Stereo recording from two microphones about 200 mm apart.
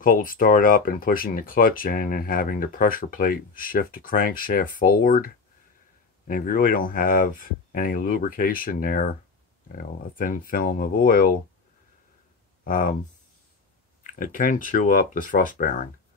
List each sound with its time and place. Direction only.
0.0 s speech: 45° left (ahead or behind)
12.6 s speech: 45° left (ahead or behind)
14.0 s speech: 45° left (ahead or behind)